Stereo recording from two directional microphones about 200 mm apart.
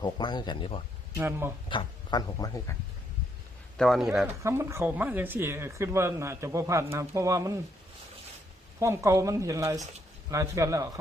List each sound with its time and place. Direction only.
0.0 s speech: 20° left (ahead or behind)
1.2 s speech: 10° right (ahead or behind)
1.7 s speech: 25° left (ahead or behind)
3.8 s speech: centre (ahead or behind)
4.4 s speech: 15° right (ahead or behind)
8.8 s speech: 15° right (ahead or behind)